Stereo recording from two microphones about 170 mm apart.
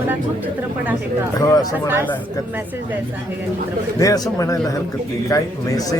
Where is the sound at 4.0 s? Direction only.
20° left (ahead or behind).